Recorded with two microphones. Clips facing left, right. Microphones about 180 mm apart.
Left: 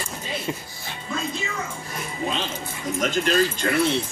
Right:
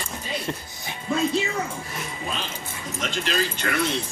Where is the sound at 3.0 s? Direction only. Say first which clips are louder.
Left 6 dB; 45° left (ahead or behind).